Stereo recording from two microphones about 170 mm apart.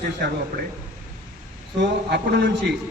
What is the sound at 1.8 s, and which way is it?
Speech, 75° right (ahead or behind).